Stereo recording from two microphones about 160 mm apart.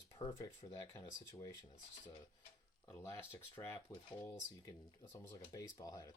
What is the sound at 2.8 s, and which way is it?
Speech, 15° left (ahead or behind).